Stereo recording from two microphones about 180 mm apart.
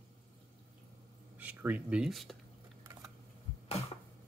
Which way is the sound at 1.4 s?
10° right (ahead or behind).